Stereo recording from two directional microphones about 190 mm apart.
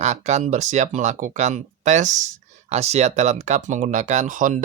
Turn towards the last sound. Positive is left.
turn(degrees=-40)  # may be behind; listen again after turning